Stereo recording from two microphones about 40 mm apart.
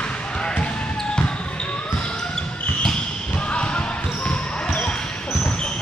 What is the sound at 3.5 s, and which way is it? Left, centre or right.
Basketball bounce, left.